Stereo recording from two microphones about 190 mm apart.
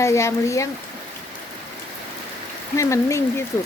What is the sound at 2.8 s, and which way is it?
Speech, 15° left (ahead or behind).